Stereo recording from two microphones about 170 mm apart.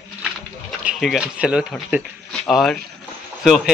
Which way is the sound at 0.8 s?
Centre (ahead or behind).